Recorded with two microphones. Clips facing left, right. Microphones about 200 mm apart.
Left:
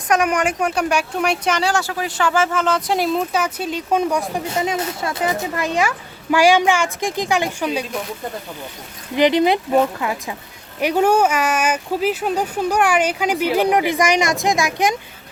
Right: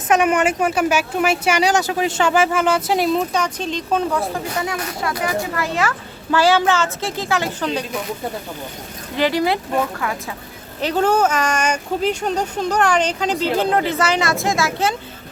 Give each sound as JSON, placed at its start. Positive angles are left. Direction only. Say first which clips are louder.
{"t": 0.1, "sound": "a woman's voice", "louder": "right 2 dB", "side_deg": -5}
{"t": 9.1, "sound": "speech", "louder": "left 3 dB", "side_deg": 20}